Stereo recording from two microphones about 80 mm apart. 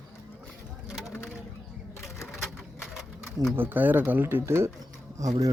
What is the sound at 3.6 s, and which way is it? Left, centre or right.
Speech, right.